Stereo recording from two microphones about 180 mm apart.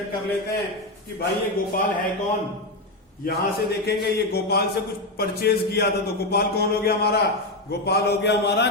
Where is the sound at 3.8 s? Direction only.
60° left (ahead or behind).